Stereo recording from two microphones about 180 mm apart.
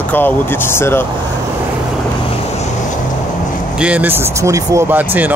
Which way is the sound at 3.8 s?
10° right (ahead or behind).